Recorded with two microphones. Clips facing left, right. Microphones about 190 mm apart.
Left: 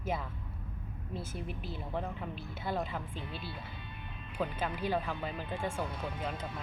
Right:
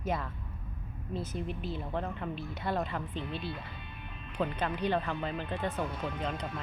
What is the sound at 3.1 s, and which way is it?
Speech, 20° right (ahead or behind).